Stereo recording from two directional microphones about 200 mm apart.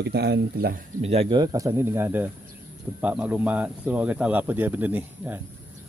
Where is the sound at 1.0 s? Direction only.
30° right (ahead or behind); by 5.4 s 10° right (ahead or behind).